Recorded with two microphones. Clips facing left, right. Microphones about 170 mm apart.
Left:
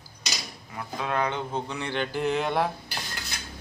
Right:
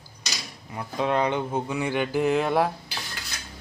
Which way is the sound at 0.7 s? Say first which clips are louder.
Right 5 dB; 20° right (ahead or behind).